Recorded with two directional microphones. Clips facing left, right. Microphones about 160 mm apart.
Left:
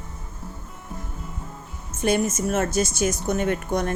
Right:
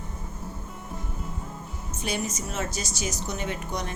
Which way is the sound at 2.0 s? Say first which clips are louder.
Left 9 dB; 55° left (ahead or behind).